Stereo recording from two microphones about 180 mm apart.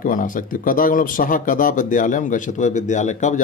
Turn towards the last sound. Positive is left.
turn(degrees=40)  # may be behind; listen again after turning